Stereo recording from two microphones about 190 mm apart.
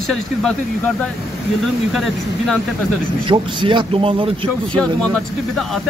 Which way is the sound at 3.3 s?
25° right (ahead or behind).